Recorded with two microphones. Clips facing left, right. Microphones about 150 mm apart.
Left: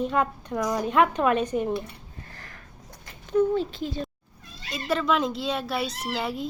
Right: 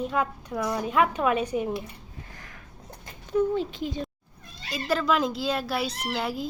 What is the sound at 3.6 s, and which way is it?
Speech, 15° right (ahead or behind).